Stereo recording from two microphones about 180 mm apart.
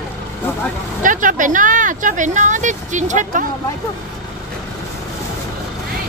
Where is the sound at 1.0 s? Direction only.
45° right (ahead or behind).